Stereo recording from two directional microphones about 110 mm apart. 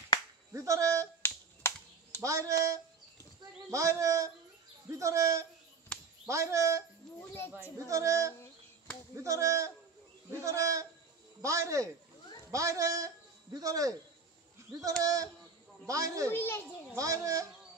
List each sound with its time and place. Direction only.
0.5 s a sound: 30° right (ahead or behind)
1.2 s finger snapping: 20° left (ahead or behind)
1.6 s typing: 20° left (ahead or behind)
2.2 s a sound: 30° right (ahead or behind)
5.9 s chop: 10° left (ahead or behind)
6.2 s a sound: 30° right (ahead or behind)
7.2 s speech: 20° left (ahead or behind)
7.7 s a sound: 30° right (ahead or behind)
12.4 s a man's voice: 30° right (ahead or behind)
15.9 s speech: 30° right (ahead or behind)
16.3 s speech: 20° left (ahead or behind)
16.9 s speech: 30° right (ahead or behind)